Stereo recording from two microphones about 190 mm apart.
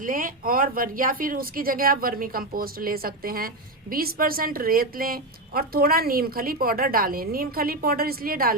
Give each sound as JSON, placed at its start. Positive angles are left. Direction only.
{"t": 0.0, "sound": "speech", "side_deg": -45}